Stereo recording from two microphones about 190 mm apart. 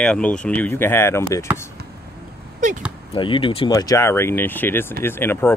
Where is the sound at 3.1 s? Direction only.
25° left (ahead or behind).